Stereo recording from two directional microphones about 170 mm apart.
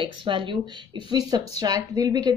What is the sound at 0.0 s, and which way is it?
A woman's voice, 30° right (ahead or behind).